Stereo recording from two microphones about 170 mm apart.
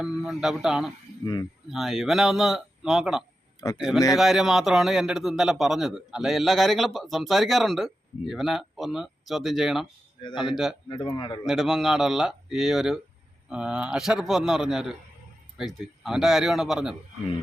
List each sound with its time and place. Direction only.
0.0 s a man's voice: 5° right (ahead or behind)
1.2 s speech: 25° left (ahead or behind)
1.7 s a man's voice: centre (ahead or behind)
10.2 s speech: 30° left (ahead or behind)
11.4 s a man's voice: centre (ahead or behind)